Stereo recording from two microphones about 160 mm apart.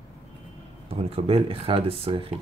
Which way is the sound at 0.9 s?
35° right (ahead or behind).